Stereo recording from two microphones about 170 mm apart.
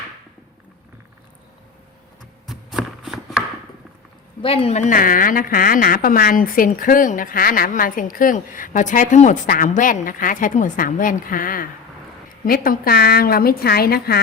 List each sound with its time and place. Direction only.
2.5 s shuffling cards: centre (ahead or behind)
4.4 s a woman's voice: 35° left (ahead or behind); by 14.2 s 65° left (ahead or behind)